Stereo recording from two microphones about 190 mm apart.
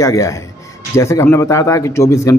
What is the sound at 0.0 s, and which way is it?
Speech, 15° left (ahead or behind).